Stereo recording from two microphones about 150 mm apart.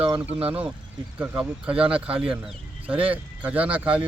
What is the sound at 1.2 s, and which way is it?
Speech, 10° right (ahead or behind).